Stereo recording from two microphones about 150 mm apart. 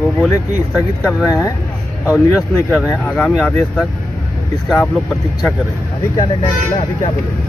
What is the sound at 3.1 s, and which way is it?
Speech, 5° left (ahead or behind).